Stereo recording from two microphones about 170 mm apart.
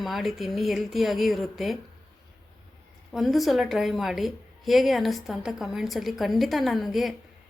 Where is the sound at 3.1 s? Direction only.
Centre (ahead or behind).